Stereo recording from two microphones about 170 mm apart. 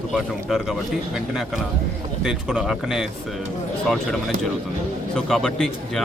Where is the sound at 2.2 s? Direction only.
5° right (ahead or behind).